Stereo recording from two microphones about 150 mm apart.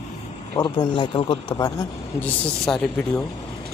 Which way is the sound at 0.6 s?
30° left (ahead or behind).